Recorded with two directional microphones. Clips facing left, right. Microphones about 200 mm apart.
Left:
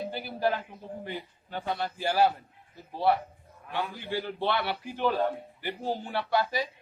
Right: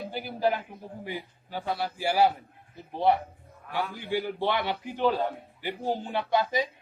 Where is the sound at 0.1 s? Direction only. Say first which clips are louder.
Right 4 dB; 15° right (ahead or behind).